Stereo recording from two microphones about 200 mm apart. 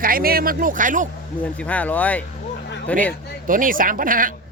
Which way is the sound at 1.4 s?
5° left (ahead or behind).